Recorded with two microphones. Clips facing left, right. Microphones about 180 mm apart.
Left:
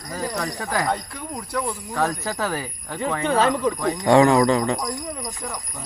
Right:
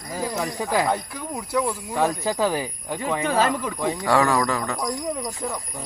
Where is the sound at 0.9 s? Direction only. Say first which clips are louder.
Right 1 dB; 5° right (ahead or behind).